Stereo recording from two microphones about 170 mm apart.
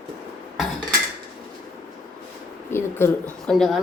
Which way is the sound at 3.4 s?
Centre (ahead or behind).